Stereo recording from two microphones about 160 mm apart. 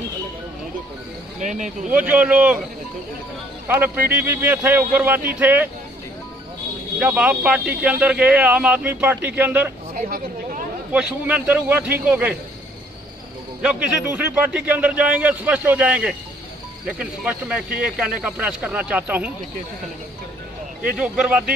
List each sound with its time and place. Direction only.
1.4 s speech: 50° right (ahead or behind)
1.9 s speech: 10° right (ahead or behind)
3.6 s speech: 10° right (ahead or behind)
7.0 s speech: 10° right (ahead or behind)
9.9 s a sound: 60° right (ahead or behind)
10.9 s speech: 10° right (ahead or behind)
14.1 s speech: 10° right (ahead or behind)
20.9 s speech: 5° right (ahead or behind)